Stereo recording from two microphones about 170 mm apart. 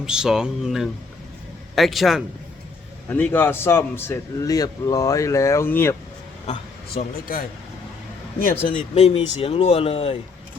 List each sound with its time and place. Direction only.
0.0 s speech: 5° right (ahead or behind)
3.1 s a man's voice: 10° left (ahead or behind)
6.9 s a man's voice: 60° left (ahead or behind)
8.7 s speech: 45° left (ahead or behind)